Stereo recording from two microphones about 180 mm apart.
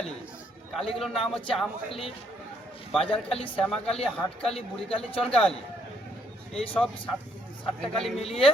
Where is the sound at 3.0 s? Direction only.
30° left (ahead or behind).